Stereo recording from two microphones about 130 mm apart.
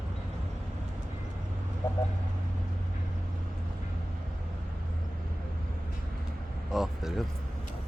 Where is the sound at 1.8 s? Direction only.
25° left (ahead or behind).